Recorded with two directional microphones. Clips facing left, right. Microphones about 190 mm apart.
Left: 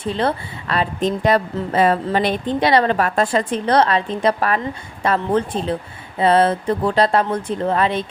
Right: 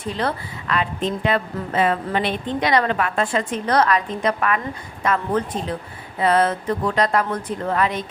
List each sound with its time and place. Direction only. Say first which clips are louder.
0.0 s a woman's voice: left 4 dB; 30° left (ahead or behind)